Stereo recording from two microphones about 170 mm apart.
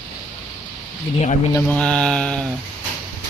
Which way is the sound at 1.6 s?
5° left (ahead or behind).